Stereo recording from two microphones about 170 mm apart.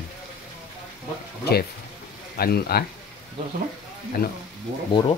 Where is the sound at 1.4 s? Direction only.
65° left (ahead or behind).